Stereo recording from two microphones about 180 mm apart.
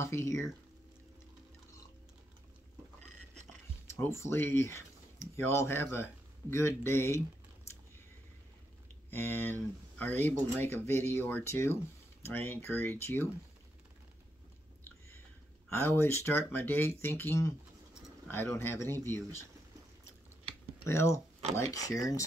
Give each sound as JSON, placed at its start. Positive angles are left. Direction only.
{"t": 0.0, "sound": "speech", "side_deg": 15}
{"t": 4.0, "sound": "speech", "side_deg": 15}
{"t": 9.1, "sound": "speech", "side_deg": 10}
{"t": 15.7, "sound": "speech", "side_deg": 15}
{"t": 20.8, "sound": "speech", "side_deg": 15}